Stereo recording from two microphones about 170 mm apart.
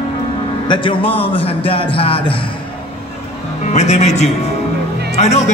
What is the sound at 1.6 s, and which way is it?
Speech, 35° left (ahead or behind).